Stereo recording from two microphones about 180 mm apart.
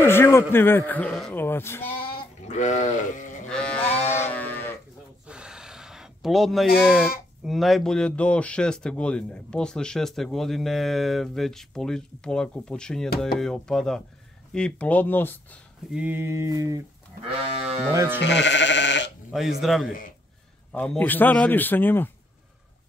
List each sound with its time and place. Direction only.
0.0 s a man's voice: 15° left (ahead or behind)
2.0 s sheep: 40° left (ahead or behind)
3.4 s livestock: 5° left (ahead or behind)
3.9 s a sound: 10° left (ahead or behind)
5.2 s a sound: 5° right (ahead or behind)
6.8 s a man's voice: 5° right (ahead or behind)
15.9 s mantra: 10° right (ahead or behind)
17.3 s sheep: 35° right (ahead or behind)
17.9 s mantra: 15° right (ahead or behind)
18.2 s sheep: 80° left
19.3 s a man's voice: centre (ahead or behind)